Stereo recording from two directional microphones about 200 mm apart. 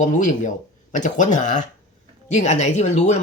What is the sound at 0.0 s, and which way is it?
Speech, 40° left (ahead or behind).